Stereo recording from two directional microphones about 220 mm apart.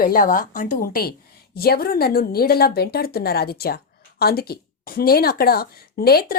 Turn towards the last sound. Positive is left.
turn(degrees=45)  # may be behind; listen again after turning